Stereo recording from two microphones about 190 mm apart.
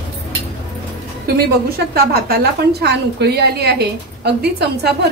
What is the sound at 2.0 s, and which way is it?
A woman's voice, 55° right (ahead or behind).